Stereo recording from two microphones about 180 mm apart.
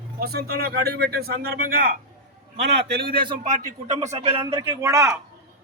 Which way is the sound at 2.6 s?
70° right (ahead or behind).